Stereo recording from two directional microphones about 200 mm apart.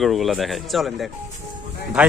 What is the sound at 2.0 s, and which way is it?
Speech, 5° right (ahead or behind).